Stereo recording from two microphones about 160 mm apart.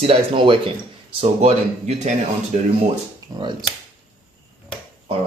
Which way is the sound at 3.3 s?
20° right (ahead or behind).